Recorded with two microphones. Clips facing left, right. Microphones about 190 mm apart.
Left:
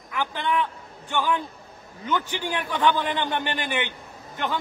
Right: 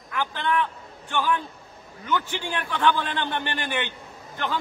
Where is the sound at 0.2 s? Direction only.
15° left (ahead or behind).